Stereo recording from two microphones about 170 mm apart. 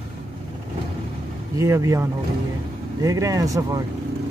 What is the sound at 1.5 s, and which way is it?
Speech, 15° right (ahead or behind).